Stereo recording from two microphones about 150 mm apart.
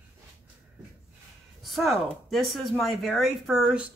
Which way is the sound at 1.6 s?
Centre (ahead or behind).